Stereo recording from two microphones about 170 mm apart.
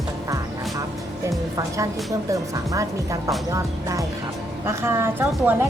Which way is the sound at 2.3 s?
20° right (ahead or behind).